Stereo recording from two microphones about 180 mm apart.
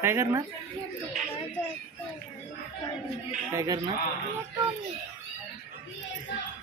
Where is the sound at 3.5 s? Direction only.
20° right (ahead or behind).